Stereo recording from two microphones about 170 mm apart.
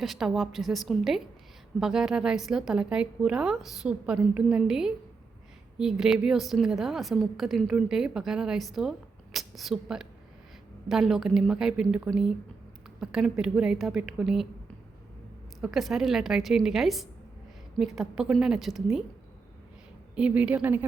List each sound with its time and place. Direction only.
0.0 s a woman's voice: centre (ahead or behind)
15.6 s a woman's voice: centre (ahead or behind)
20.1 s a woman's voice: 5° right (ahead or behind)